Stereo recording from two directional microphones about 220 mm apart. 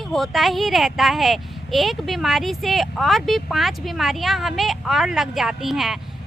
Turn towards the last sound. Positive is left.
turn(degrees=0)  # may be behind; listen again after turning